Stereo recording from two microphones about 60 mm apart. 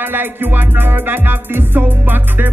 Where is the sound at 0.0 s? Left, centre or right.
Right.